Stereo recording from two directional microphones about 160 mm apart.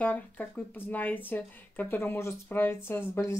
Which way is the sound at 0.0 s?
10° left (ahead or behind).